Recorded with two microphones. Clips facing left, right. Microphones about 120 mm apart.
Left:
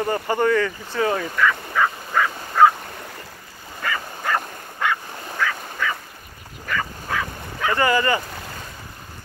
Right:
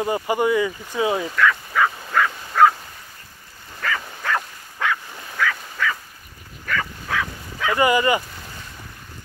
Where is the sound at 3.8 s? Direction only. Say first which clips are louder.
Even; centre (ahead or behind).